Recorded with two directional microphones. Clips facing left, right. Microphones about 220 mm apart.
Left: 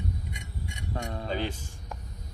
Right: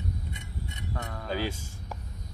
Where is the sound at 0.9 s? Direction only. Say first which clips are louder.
Left 4 dB; 20° left (ahead or behind).